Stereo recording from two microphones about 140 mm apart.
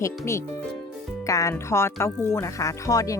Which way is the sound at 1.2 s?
25° left (ahead or behind).